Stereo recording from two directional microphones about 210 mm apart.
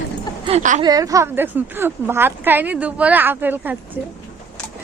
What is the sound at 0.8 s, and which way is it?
A woman's voice, 15° right (ahead or behind).